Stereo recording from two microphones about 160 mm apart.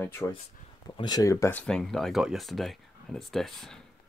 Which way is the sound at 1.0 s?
25° left (ahead or behind).